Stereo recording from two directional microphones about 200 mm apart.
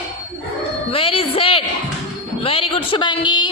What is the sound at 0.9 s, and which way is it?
A man's voice, 25° left (ahead or behind).